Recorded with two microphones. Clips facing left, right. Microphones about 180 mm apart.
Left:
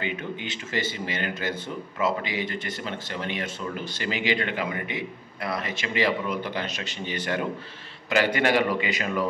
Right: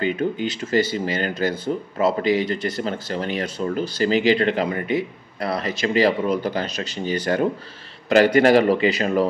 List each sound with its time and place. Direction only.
0.0 s speech: 40° right (ahead or behind)